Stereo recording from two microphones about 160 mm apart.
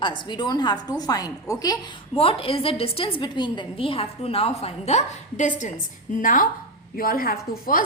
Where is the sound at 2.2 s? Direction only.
35° left (ahead or behind).